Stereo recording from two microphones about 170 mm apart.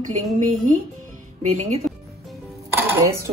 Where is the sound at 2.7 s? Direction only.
15° right (ahead or behind).